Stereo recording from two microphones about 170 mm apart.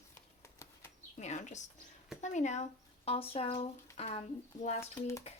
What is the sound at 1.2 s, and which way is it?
Speech, 45° left (ahead or behind).